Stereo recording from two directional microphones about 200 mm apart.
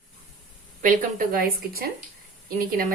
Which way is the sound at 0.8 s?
45° right (ahead or behind).